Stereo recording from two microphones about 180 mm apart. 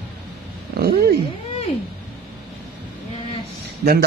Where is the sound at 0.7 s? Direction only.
60° right (ahead or behind).